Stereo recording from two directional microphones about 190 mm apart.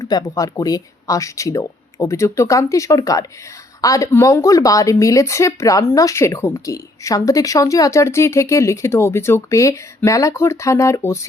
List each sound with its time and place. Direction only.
0.0 s speech: 20° left (ahead or behind)